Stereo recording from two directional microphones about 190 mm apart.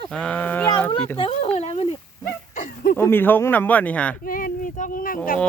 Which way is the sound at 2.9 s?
10° left (ahead or behind).